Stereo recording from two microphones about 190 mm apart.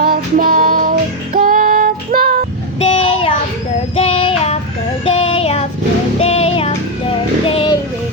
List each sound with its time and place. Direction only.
0.0 s music: 50° right (ahead or behind)
2.8 s child singing: 30° left (ahead or behind)
6.1 s music: 30° left (ahead or behind)